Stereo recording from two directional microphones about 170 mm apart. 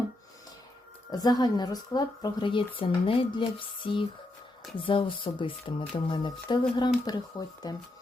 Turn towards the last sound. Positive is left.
turn(degrees=20)  # may be behind; listen again after turning